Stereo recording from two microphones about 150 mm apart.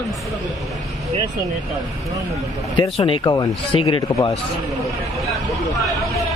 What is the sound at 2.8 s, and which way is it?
Speech, 35° left (ahead or behind).